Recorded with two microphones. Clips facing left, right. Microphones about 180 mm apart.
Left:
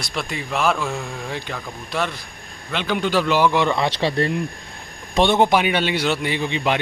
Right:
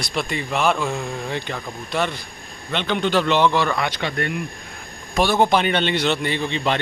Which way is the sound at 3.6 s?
25° left (ahead or behind).